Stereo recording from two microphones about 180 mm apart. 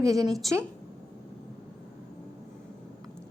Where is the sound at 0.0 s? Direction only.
20° right (ahead or behind).